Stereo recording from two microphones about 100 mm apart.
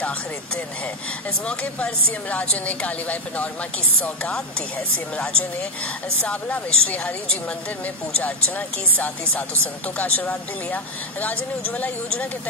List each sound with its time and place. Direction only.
1.4 s a woman's voice: 10° left (ahead or behind)